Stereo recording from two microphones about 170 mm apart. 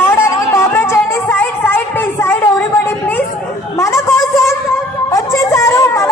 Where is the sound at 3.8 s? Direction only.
15° left (ahead or behind).